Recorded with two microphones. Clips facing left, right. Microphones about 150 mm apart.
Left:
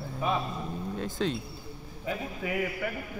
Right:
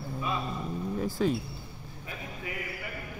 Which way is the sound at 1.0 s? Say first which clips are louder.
Right 3 dB; 5° right (ahead or behind).